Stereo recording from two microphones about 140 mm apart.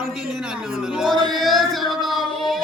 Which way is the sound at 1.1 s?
30° right (ahead or behind).